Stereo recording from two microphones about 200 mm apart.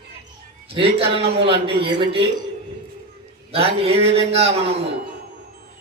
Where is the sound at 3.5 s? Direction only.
30° right (ahead or behind).